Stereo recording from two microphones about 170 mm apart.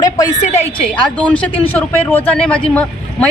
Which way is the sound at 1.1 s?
10° left (ahead or behind).